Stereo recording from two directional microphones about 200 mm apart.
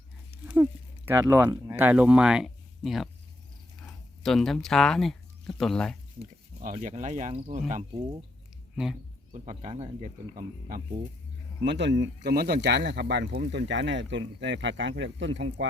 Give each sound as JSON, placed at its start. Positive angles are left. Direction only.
{"t": 0.4, "sound": "speech", "side_deg": -10}
{"t": 6.6, "sound": "speech", "side_deg": -40}
{"t": 8.7, "sound": "speech", "side_deg": -5}
{"t": 9.3, "sound": "speech", "side_deg": -35}
{"t": 10.3, "sound": "speech", "side_deg": -45}
{"t": 11.6, "sound": "speech", "side_deg": -60}